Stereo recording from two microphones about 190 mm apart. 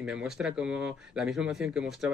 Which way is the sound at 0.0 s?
5° right (ahead or behind).